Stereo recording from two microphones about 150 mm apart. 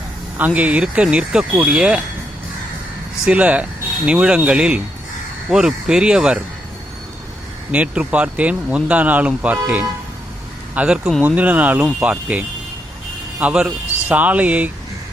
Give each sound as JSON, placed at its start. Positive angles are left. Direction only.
{"t": 0.3, "sound": "speech", "side_deg": -10}
{"t": 3.2, "sound": "speech", "side_deg": -10}
{"t": 7.7, "sound": "speech", "side_deg": -10}